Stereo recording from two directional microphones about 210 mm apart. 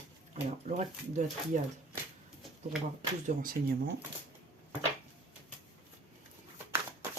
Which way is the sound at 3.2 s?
45° right (ahead or behind).